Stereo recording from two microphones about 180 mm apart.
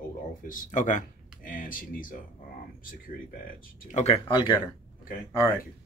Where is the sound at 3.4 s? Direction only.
40° left (ahead or behind).